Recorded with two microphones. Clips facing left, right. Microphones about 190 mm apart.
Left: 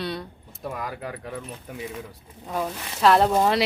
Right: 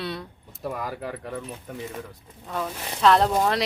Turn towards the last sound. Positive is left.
turn(degrees=5)  # may be behind; listen again after turning